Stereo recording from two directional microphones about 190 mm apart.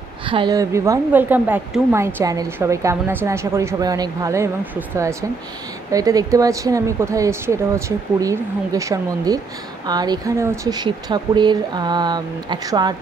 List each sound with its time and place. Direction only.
0.2 s a woman's voice: 25° right (ahead or behind)